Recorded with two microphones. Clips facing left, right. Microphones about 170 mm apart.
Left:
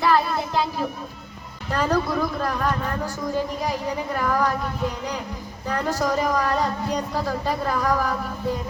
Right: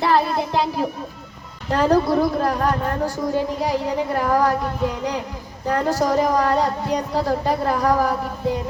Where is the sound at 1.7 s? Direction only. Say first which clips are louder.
Right 6 dB; 30° right (ahead or behind).